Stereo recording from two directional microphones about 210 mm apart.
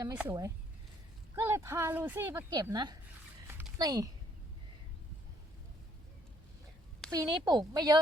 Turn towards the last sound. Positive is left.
turn(degrees=-15)  # may be behind; listen again after turning